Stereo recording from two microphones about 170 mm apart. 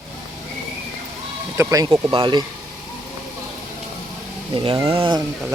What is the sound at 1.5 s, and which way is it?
Speech, 20° right (ahead or behind).